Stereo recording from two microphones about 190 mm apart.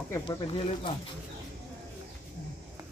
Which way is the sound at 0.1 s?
25° left (ahead or behind).